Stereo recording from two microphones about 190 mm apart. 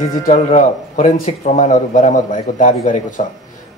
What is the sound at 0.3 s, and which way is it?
Speech, 40° left (ahead or behind).